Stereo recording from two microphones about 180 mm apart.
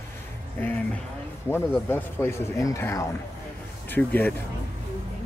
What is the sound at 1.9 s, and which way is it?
Speech, 15° left (ahead or behind).